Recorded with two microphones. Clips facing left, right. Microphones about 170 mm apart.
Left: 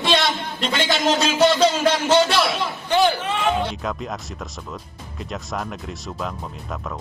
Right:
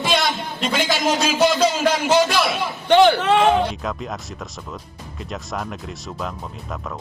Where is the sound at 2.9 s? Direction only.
75° right (ahead or behind).